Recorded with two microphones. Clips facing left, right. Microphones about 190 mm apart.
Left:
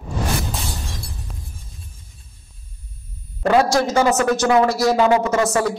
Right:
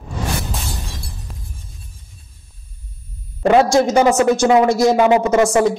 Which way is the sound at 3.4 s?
20° right (ahead or behind).